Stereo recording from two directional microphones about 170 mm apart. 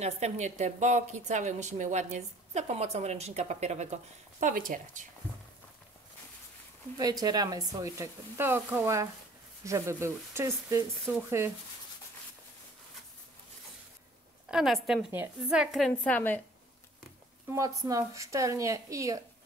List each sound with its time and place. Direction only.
0.0 s a woman's voice: 40° right (ahead or behind)
7.0 s speech: 20° right (ahead or behind)
14.5 s speech: centre (ahead or behind)
17.5 s speech: 20° right (ahead or behind)